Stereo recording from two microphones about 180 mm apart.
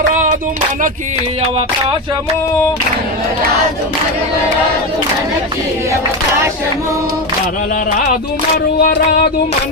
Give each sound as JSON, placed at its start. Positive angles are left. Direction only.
{"t": 0.1, "sound": "music", "side_deg": -45}
{"t": 7.9, "sound": "music", "side_deg": 50}
{"t": 8.8, "sound": "a sound", "side_deg": 55}